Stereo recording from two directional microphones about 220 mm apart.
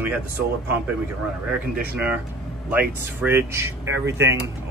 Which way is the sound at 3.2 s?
10° right (ahead or behind).